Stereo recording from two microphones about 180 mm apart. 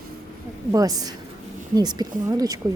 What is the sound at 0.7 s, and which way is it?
A woman's voice, 20° right (ahead or behind).